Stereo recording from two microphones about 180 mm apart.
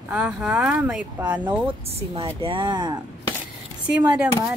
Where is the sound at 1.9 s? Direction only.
35° right (ahead or behind).